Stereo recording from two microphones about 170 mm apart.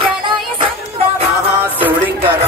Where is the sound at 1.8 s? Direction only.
10° right (ahead or behind).